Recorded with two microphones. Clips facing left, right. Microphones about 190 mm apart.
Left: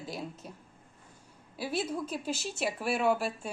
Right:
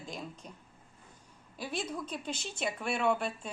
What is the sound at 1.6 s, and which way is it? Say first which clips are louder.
A woman's voice: left 4 dB; 5° left (ahead or behind).